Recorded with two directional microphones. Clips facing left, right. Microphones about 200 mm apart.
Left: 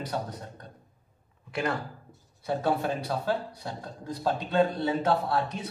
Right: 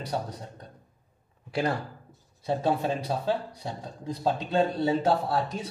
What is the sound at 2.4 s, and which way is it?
A man's voice, 25° right (ahead or behind).